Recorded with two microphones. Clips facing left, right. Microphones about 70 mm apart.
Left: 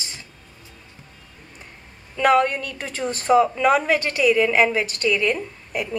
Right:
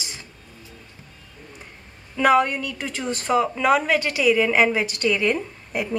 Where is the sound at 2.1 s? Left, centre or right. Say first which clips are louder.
Even; centre.